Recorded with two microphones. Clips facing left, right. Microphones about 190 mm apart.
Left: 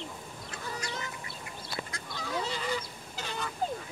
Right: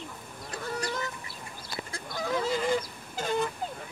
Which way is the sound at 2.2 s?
50° right (ahead or behind).